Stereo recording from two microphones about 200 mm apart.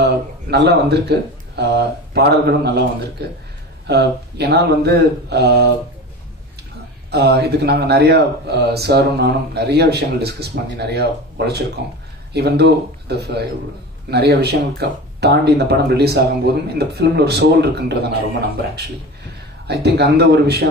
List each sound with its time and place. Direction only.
0.0 s speech: 55° right (ahead or behind)
7.1 s speech: 55° right (ahead or behind)
19.7 s speech: 55° right (ahead or behind)